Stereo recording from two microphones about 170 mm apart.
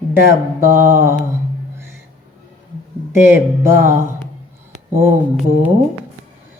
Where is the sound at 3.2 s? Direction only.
15° right (ahead or behind).